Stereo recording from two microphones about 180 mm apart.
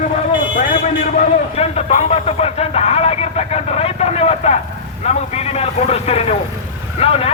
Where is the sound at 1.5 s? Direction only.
35° left (ahead or behind).